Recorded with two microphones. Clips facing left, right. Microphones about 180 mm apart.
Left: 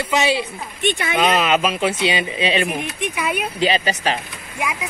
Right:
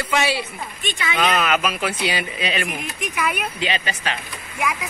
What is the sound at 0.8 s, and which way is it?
Speech, 55° left (ahead or behind).